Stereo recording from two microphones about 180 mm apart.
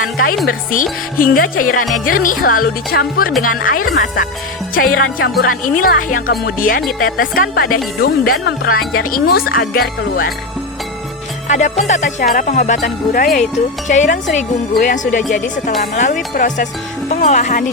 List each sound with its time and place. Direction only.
0.4 s speech: 50° left (ahead or behind)
11.4 s speech: 40° left (ahead or behind)